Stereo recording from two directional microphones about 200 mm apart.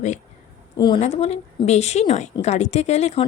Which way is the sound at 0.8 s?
20° left (ahead or behind).